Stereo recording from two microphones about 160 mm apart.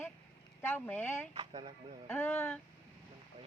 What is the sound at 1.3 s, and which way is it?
Speech, 30° right (ahead or behind).